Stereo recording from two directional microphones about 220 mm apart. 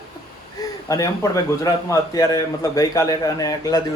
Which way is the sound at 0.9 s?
15° left (ahead or behind).